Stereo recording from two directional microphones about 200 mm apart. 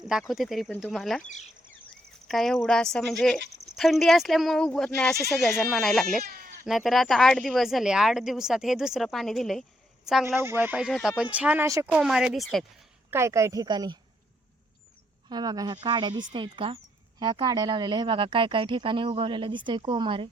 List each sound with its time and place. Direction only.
0.0 s speech: centre (ahead or behind)
1.2 s speech: 35° left (ahead or behind)
2.2 s speech: centre (ahead or behind)
6.2 s goat: 50° right (ahead or behind)
6.7 s speech: centre (ahead or behind)
10.2 s speech: 15° right (ahead or behind)
13.1 s speech: 15° right (ahead or behind)
15.3 s speech: 20° right (ahead or behind)